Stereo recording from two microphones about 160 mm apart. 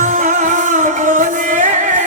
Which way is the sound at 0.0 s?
55° right (ahead or behind).